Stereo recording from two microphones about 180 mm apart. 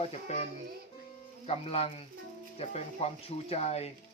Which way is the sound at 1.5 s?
35° left (ahead or behind).